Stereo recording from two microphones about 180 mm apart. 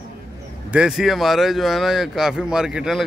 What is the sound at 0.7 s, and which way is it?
Speech, 5° right (ahead or behind).